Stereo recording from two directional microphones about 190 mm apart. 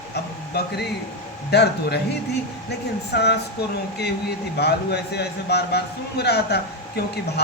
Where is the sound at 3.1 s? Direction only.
60° left (ahead or behind).